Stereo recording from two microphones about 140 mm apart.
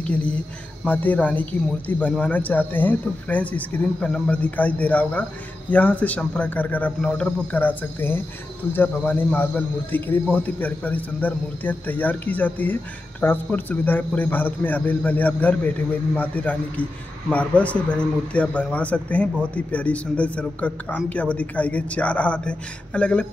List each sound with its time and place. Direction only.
0.0 s speech: 10° left (ahead or behind)